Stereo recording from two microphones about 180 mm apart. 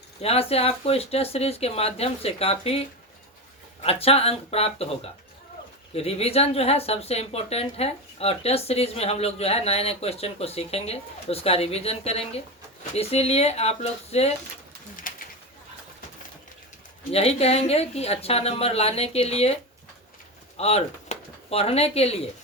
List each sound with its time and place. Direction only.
0.2 s speech: 35° left (ahead or behind)
5.9 s speech: 35° left (ahead or behind)
14.9 s pigeon: 50° left (ahead or behind)
17.1 s speech: 35° left (ahead or behind)
20.6 s speech: 35° left (ahead or behind)